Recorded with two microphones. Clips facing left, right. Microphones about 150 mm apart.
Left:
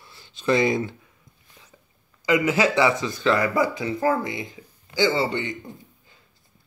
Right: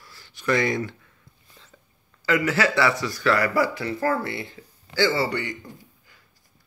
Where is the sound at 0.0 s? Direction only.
20° left (ahead or behind).